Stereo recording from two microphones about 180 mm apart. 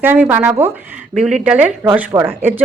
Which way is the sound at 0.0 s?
10° right (ahead or behind).